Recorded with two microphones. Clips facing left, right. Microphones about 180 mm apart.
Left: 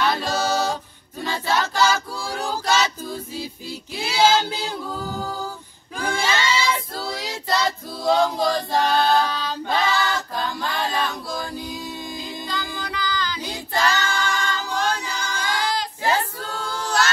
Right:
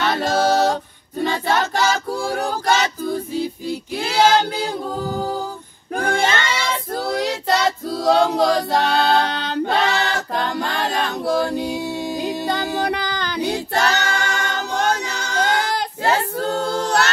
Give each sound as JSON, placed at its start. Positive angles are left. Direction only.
{"t": 0.0, "sound": "music", "side_deg": -60}
{"t": 1.2, "sound": "choir", "side_deg": -55}
{"t": 5.9, "sound": "child singing", "side_deg": -55}
{"t": 7.2, "sound": "choir", "side_deg": -70}